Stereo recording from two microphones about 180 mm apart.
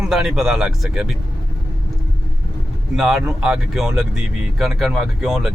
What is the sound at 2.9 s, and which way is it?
Speech, centre (ahead or behind).